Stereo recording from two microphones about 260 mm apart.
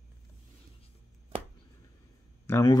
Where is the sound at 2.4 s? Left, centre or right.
Centre.